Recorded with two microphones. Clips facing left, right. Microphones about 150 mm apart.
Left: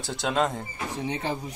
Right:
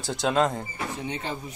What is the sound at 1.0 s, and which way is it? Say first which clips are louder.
Speech: left 6 dB; 30° left (ahead or behind).